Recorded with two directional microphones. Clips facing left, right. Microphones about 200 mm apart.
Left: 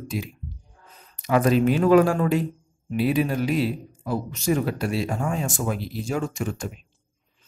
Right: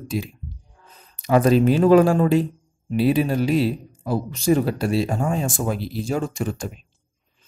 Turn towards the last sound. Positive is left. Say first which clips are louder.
# right 2 dB
turn(degrees=-35)  # may be behind; listen again after turning